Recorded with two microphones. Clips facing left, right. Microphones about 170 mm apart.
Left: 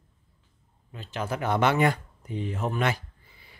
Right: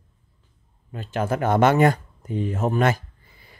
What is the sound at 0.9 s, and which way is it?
Speech, 50° right (ahead or behind).